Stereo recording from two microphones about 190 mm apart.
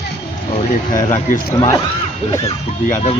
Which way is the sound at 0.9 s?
45° left (ahead or behind).